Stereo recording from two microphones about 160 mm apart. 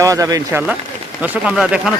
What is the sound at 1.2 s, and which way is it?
Speech, 10° right (ahead or behind).